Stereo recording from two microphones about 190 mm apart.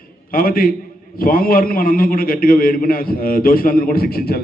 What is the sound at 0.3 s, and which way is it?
A man's voice, 50° left (ahead or behind).